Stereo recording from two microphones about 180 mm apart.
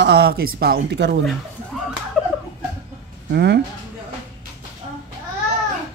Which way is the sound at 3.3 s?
70° right (ahead or behind).